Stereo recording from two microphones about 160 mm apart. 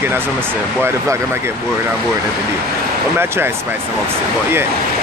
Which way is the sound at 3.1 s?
15° right (ahead or behind).